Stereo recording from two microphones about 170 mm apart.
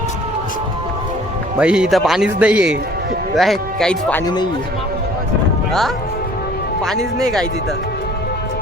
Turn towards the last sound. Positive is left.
turn(degrees=5)  # may be behind; listen again after turning